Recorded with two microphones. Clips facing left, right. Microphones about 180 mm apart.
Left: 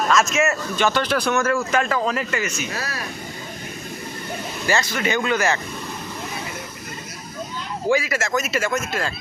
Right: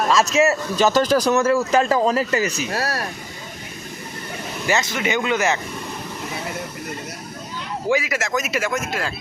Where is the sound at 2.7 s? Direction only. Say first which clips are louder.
Right 6 dB; 65° right (ahead or behind).